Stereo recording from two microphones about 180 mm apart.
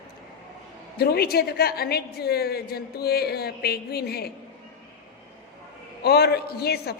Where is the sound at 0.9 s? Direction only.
60° left (ahead or behind).